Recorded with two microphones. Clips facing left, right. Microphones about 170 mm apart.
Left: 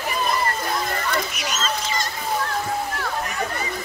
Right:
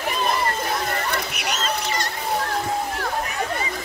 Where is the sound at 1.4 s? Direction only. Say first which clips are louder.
Right 1 dB; 65° right (ahead or behind).